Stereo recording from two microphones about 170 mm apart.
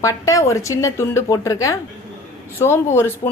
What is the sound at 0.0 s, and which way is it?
A woman's voice, 20° left (ahead or behind).